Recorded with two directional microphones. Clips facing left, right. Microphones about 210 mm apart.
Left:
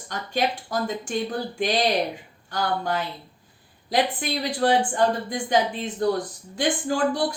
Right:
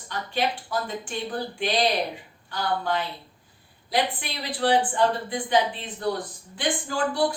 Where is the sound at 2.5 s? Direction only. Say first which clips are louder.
Left 1 dB; 45° left (ahead or behind).